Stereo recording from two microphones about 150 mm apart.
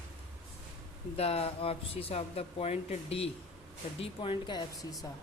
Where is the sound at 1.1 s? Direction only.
40° left (ahead or behind); by 5.0 s 25° left (ahead or behind).